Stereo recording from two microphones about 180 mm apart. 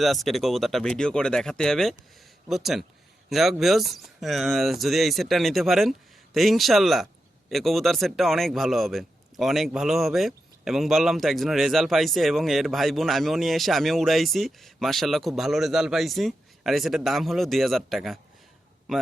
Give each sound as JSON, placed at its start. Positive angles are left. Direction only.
{"t": 0.0, "sound": "speech", "side_deg": 0}